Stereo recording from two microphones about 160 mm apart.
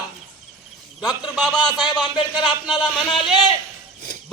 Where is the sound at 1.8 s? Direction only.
30° left (ahead or behind).